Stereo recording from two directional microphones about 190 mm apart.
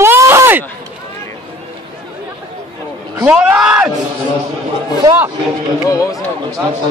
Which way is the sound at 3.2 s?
5° right (ahead or behind).